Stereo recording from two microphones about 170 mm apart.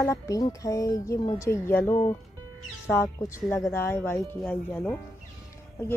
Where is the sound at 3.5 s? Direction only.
15° left (ahead or behind).